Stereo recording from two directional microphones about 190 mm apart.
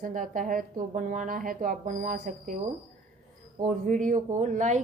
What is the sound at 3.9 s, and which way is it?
Speech, 45° right (ahead or behind).